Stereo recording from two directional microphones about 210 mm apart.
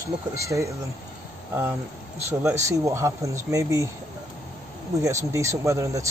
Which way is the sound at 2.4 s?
15° right (ahead or behind).